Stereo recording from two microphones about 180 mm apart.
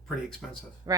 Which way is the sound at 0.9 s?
20° right (ahead or behind).